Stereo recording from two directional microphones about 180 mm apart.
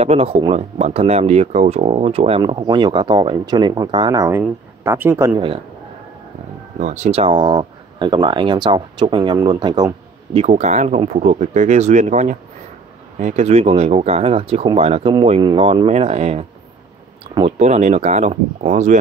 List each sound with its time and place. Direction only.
0.0 s speech: 35° right (ahead or behind); by 5.4 s 15° right (ahead or behind)
6.8 s speech: 40° right (ahead or behind); by 9.8 s 25° right (ahead or behind)
10.3 s speech: 40° right (ahead or behind)